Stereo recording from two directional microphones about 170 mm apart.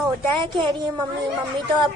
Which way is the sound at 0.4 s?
30° right (ahead or behind).